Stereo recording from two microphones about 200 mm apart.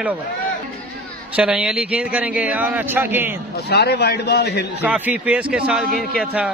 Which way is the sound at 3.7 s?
55° left (ahead or behind).